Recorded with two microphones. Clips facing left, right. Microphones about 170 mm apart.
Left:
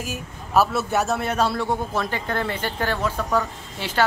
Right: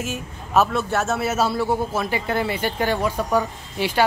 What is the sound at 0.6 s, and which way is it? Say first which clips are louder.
A man's voice: even; centre (ahead or behind).